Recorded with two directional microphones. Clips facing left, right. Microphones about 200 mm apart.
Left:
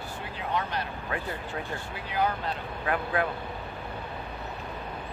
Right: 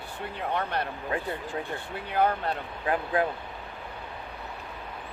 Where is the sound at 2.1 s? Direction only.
55° right (ahead or behind).